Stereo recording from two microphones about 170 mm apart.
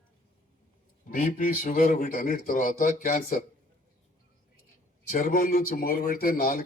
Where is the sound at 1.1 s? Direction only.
50° left (ahead or behind).